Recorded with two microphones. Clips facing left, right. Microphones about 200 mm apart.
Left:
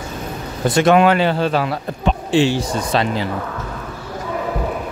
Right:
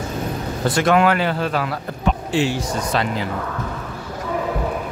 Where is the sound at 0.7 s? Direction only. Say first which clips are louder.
Left 4 dB; 20° left (ahead or behind).